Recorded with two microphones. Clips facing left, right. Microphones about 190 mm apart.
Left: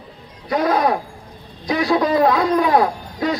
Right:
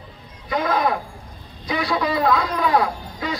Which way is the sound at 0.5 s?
40° left (ahead or behind).